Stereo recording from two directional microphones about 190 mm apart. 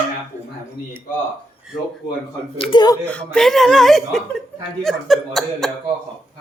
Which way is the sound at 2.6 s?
25° left (ahead or behind).